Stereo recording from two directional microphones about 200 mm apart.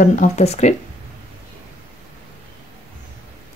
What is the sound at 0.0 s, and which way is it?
Speech, 40° left (ahead or behind).